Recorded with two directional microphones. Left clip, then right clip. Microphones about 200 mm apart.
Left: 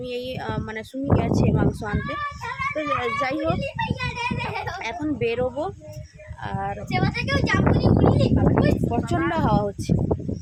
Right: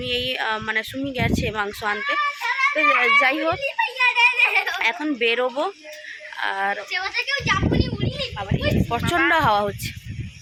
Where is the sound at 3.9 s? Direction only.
20° left (ahead or behind).